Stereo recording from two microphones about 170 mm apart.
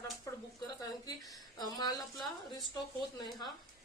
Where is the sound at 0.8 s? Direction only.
25° left (ahead or behind).